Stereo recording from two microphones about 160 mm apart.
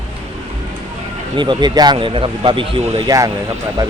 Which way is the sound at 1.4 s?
30° right (ahead or behind).